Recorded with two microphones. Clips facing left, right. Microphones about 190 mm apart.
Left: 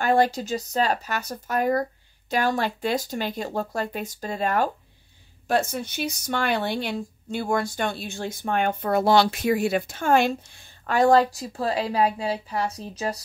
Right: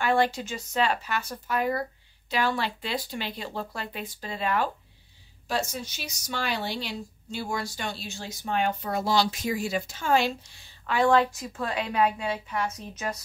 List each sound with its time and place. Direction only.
0.0 s speech: 40° left (ahead or behind)
5.5 s speech: 55° left (ahead or behind); by 13.2 s 35° left (ahead or behind)